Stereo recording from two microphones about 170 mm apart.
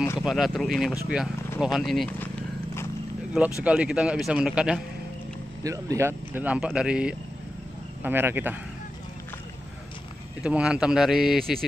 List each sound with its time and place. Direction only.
0.2 s speech: centre (ahead or behind)
3.6 s speech: 5° right (ahead or behind)
5.6 s speech: 20° right (ahead or behind)
10.4 s speech: 5° right (ahead or behind)